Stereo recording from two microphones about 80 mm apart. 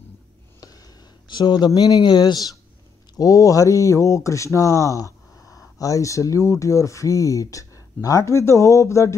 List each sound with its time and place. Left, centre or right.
1.3 s speech: left
3.2 s speech: left